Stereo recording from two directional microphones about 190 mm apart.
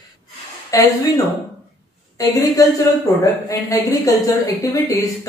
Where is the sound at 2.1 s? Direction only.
20° left (ahead or behind).